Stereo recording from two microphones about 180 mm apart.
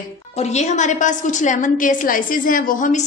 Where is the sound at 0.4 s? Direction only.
40° left (ahead or behind).